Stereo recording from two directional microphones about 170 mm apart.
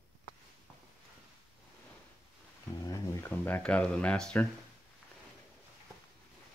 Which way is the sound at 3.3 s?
10° left (ahead or behind).